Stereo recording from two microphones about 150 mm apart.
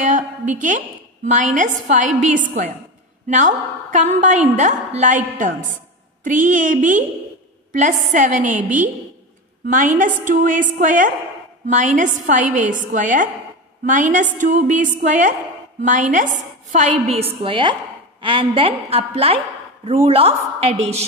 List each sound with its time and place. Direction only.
0.0 s a woman's voice: 60° right (ahead or behind)
9.7 s a woman's voice: 60° right (ahead or behind); by 21.0 s 45° right (ahead or behind)